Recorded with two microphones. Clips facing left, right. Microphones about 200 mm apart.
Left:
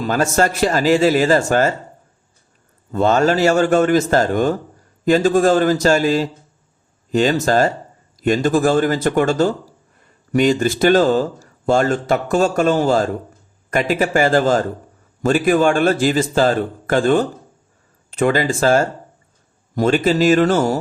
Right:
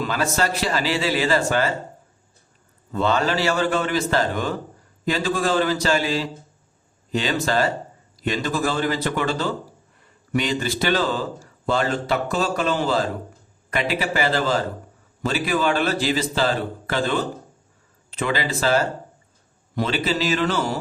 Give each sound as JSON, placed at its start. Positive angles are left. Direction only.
{"t": 0.0, "sound": "speech", "side_deg": 45}
{"t": 2.9, "sound": "speech", "side_deg": 45}